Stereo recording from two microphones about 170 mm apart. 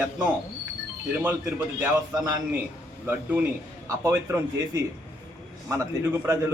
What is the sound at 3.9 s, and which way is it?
A man's voice, 15° right (ahead or behind).